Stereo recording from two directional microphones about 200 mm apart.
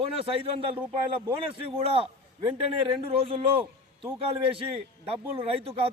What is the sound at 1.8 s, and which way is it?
A man's voice, 30° right (ahead or behind).